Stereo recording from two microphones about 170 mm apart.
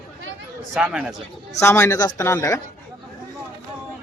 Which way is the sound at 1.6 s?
15° left (ahead or behind).